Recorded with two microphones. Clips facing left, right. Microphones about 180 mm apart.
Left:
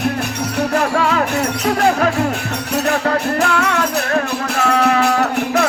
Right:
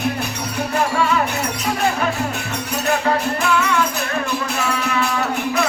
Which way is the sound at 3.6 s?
70° left (ahead or behind).